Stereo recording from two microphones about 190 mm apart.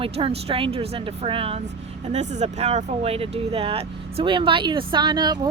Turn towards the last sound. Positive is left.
turn(degrees=-20)  # may be behind; listen again after turning